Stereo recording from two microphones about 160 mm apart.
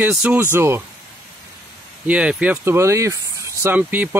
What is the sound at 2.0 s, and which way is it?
Speech, 5° right (ahead or behind).